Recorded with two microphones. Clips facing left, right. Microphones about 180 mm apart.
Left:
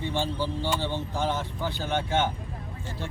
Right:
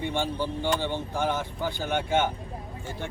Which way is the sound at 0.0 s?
15° right (ahead or behind).